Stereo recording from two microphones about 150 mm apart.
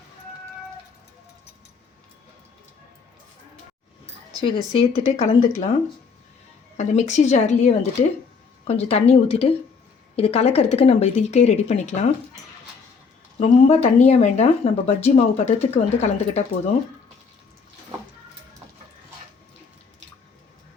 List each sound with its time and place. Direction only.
4.4 s speech: 35° left (ahead or behind)
6.7 s speech: 50° left (ahead or behind)
13.4 s speech: 45° left (ahead or behind)